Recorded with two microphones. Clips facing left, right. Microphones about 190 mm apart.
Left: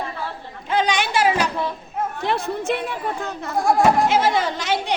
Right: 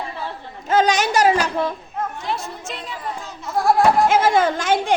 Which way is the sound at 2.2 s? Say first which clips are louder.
Left 5 dB; 60° left (ahead or behind).